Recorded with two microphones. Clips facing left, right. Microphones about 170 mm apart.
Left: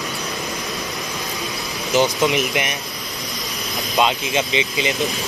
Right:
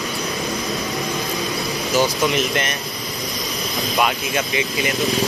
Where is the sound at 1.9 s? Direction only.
20° left (ahead or behind).